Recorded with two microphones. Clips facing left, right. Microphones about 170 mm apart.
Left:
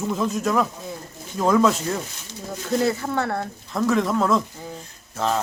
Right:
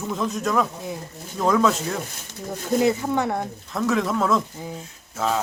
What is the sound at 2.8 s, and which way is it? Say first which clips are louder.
Speech: right 3 dB; 15° right (ahead or behind).